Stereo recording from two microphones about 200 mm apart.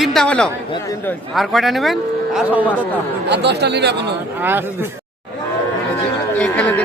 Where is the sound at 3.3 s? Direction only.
60° right (ahead or behind).